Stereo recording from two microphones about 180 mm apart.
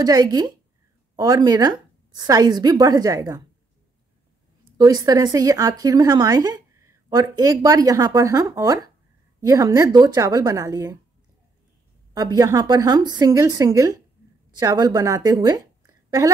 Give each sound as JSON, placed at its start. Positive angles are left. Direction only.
{"t": 0.0, "sound": "speech", "side_deg": -20}
{"t": 4.7, "sound": "speech", "side_deg": -20}
{"t": 12.1, "sound": "speech", "side_deg": -20}